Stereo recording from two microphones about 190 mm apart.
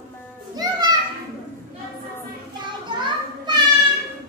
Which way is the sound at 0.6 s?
20° right (ahead or behind).